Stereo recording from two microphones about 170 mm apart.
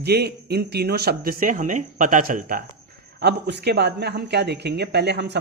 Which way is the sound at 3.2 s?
75° right (ahead or behind).